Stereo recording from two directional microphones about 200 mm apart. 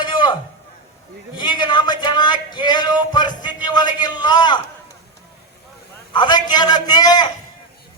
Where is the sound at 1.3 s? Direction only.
20° left (ahead or behind).